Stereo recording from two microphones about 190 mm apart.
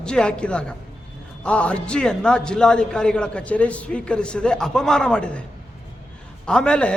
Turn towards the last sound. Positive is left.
turn(degrees=5)  # may be behind; listen again after turning